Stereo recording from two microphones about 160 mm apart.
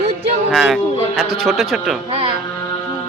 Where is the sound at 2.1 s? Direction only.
35° right (ahead or behind).